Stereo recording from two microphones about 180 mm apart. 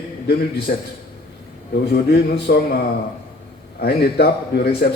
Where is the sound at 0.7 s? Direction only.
50° left (ahead or behind).